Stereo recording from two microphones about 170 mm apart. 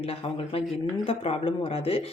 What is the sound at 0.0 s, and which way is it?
Speech, 35° left (ahead or behind).